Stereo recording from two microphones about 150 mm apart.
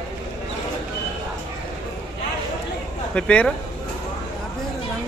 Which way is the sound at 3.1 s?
10° left (ahead or behind).